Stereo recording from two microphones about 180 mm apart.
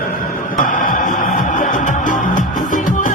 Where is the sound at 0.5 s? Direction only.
50° left (ahead or behind).